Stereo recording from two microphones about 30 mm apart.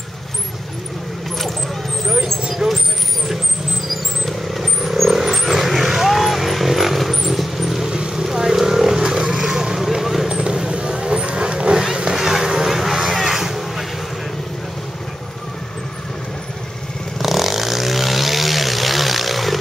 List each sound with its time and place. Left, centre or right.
2.6 s vehicle: centre
5.1 s vehicle: centre
7.8 s vehicle: right
12.0 s a sound: right
12.6 s music: centre
17.2 s vehicle: centre